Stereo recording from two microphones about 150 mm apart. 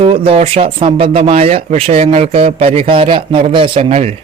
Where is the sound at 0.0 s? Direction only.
40° right (ahead or behind).